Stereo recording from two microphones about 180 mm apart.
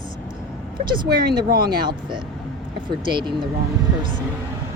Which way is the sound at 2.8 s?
25° right (ahead or behind).